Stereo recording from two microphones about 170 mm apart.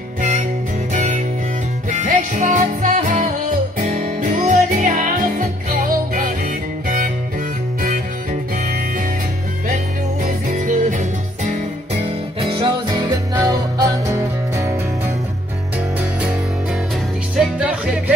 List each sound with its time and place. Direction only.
0.2 s music: 45° right (ahead or behind)
10.2 s music: 50° right (ahead or behind)
12.5 s music: 25° right (ahead or behind)
17.4 s music: 5° right (ahead or behind)